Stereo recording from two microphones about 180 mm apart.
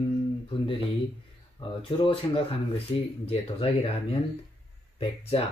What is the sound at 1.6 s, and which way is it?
Speech, 20° left (ahead or behind).